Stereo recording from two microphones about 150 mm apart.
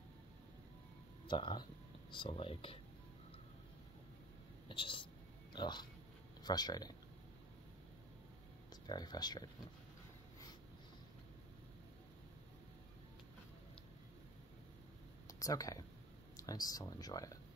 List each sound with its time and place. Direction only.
1.2 s speech: 30° left (ahead or behind)
4.6 s speech: 35° left (ahead or behind)
8.8 s speech: 30° left (ahead or behind)
15.2 s speech: 25° left (ahead or behind)